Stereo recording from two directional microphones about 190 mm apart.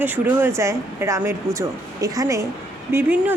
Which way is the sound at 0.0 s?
10° right (ahead or behind).